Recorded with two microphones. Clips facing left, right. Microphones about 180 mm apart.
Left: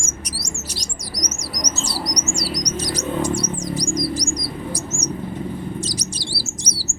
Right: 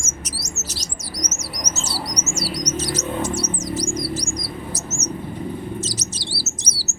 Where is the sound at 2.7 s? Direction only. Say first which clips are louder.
Even; 15° left (ahead or behind).